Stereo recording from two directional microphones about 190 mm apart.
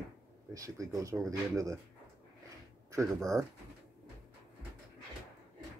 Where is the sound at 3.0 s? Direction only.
Centre (ahead or behind).